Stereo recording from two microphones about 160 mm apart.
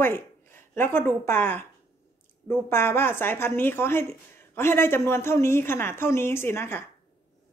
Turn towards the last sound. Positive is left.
turn(degrees=15)  # may be behind; listen again after turning